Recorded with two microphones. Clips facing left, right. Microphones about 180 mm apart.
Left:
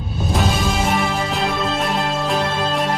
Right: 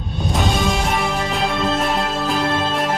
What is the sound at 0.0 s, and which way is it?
Music, centre (ahead or behind).